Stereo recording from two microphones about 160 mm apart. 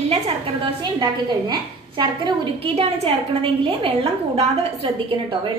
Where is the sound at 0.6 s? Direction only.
30° right (ahead or behind).